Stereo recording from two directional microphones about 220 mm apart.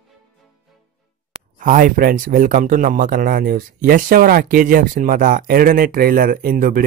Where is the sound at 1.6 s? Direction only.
40° right (ahead or behind).